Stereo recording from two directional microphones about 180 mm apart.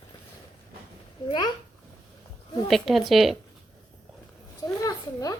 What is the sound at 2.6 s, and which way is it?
Speech, centre (ahead or behind).